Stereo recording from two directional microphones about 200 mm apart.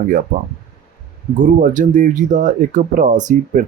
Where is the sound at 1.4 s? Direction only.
40° right (ahead or behind).